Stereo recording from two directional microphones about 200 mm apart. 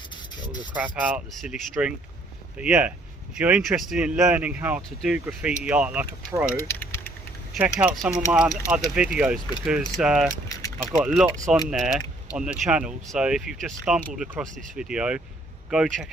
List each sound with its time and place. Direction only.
0.1 s rub: 20° left (ahead or behind)
0.7 s speech: 5° right (ahead or behind)